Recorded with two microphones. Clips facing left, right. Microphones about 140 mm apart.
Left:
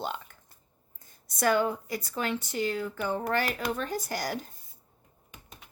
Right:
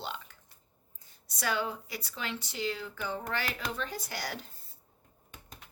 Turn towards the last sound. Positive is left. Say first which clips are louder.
# left 6 dB
turn(degrees=45)  # may be behind; listen again after turning